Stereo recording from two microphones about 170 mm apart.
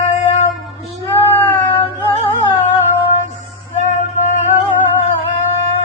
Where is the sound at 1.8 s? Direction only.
35° left (ahead or behind).